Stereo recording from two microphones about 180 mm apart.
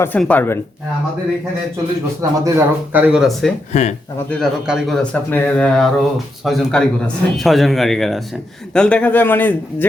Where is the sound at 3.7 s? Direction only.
40° left (ahead or behind).